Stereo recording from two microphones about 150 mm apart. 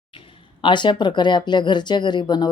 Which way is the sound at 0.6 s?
30° left (ahead or behind).